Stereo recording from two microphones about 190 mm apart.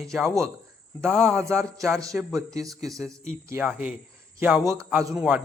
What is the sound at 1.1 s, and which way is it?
Speech, centre (ahead or behind).